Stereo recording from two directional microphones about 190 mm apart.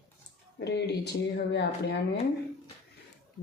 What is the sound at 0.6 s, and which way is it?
Speech, 60° left (ahead or behind).